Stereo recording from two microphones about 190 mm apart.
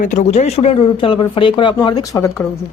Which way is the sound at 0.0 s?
35° left (ahead or behind).